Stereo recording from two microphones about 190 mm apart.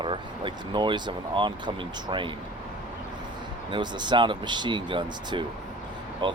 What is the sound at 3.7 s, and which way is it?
Speech, 25° right (ahead or behind).